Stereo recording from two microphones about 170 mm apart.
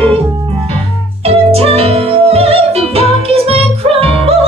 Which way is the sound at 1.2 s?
35° right (ahead or behind).